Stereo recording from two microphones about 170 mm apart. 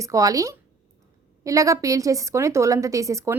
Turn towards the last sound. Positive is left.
turn(degrees=-15)  # may be behind; listen again after turning